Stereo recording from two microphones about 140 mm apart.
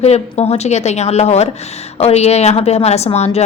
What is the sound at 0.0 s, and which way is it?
A woman's voice, 50° left (ahead or behind).